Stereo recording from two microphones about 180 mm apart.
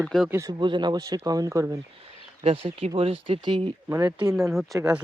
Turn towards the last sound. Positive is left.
turn(degrees=0)  # may be behind; listen again after turning